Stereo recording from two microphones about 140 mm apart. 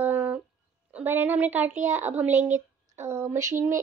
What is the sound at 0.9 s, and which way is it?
A woman's voice, 15° right (ahead or behind).